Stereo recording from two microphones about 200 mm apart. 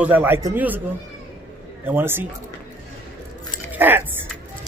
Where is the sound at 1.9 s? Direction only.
10° right (ahead or behind).